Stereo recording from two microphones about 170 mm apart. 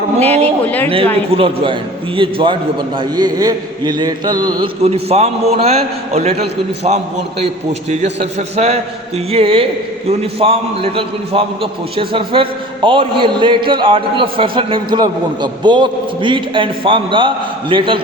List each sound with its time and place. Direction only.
0.2 s a man's voice: 35° right (ahead or behind)
4.8 s a man's voice: 35° right (ahead or behind)